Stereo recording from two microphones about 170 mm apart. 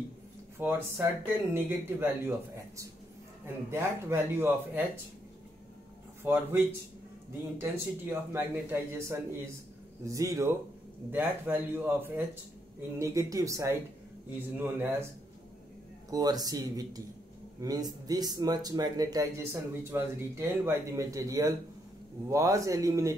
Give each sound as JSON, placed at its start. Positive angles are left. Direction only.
{"t": 0.6, "sound": "speech", "side_deg": -10}
{"t": 6.2, "sound": "speech", "side_deg": -15}
{"t": 16.1, "sound": "speech", "side_deg": -20}